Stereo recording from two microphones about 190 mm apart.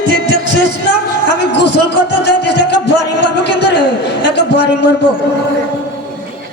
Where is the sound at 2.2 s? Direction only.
65° left (ahead or behind).